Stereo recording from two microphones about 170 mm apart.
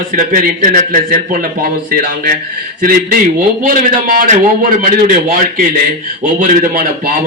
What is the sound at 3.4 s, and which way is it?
A man's voice, 55° right (ahead or behind).